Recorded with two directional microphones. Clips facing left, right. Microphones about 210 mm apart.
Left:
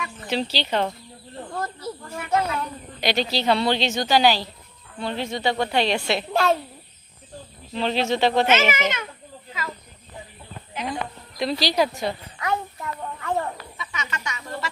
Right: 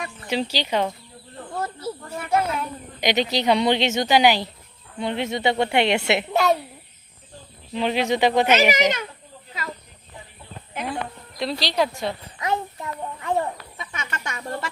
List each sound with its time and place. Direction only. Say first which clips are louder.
0.3 s speech: right 1 dB; 10° right (ahead or behind)
1.5 s snake: right 2 dB; 10° right (ahead or behind)
2.4 s speech: right 1 dB; 10° right (ahead or behind)
6.3 s a woman's voice: even; centre (ahead or behind)
7.7 s speech: right 1 dB; 15° right (ahead or behind)
8.7 s a child's voice: right 4 dB; 35° right (ahead or behind)
11.3 s a woman's voice: left 1 dB; centre (ahead or behind)
12.4 s a child's voice: right 2 dB; 20° right (ahead or behind)
13.7 s a sound: even; 50° right (ahead or behind)